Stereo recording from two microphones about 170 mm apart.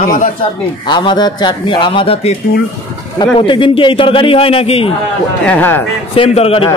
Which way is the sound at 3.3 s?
30° left (ahead or behind).